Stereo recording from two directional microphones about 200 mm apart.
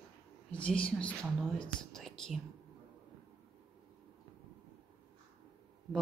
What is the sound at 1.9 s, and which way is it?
Whispering, centre (ahead or behind).